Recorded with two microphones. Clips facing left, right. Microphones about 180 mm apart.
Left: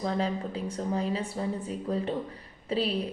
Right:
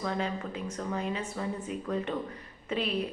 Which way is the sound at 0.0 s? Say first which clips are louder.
Left 3 dB; 35° left (ahead or behind).